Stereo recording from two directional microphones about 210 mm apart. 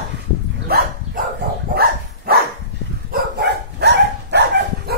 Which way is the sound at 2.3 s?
45° right (ahead or behind).